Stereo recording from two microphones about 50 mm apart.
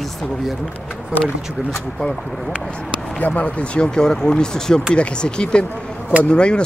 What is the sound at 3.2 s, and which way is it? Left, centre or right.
Speech, left.